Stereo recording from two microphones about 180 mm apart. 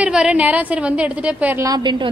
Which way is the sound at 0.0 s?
5° right (ahead or behind).